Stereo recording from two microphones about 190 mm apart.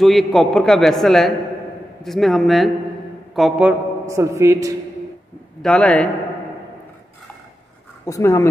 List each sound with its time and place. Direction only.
0.0 s a man's voice: centre (ahead or behind); by 4.7 s 15° right (ahead or behind)
5.6 s a man's voice: 5° left (ahead or behind)
8.0 s speech: 15° left (ahead or behind)